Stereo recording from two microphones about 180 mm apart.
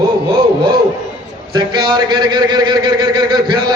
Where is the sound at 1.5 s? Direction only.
25° right (ahead or behind).